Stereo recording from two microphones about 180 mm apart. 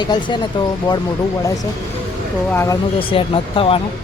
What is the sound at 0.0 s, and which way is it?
Speech, 25° left (ahead or behind).